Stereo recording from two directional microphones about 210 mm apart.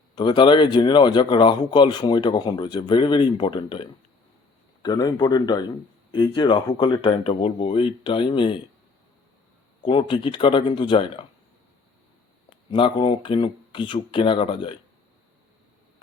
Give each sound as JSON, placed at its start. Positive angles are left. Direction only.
{"t": 0.2, "sound": "a man's voice", "side_deg": 20}
{"t": 9.8, "sound": "a man's voice", "side_deg": 25}
{"t": 12.7, "sound": "a man's voice", "side_deg": 25}